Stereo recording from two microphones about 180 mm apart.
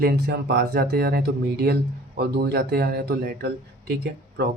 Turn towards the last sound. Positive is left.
turn(degrees=-65)  # may be behind; listen again after turning